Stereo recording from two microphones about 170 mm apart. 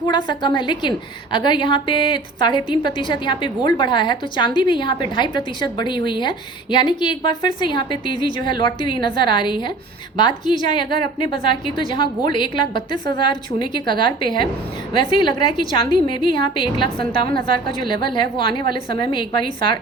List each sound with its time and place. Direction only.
0.0 s a woman's voice: 25° left (ahead or behind)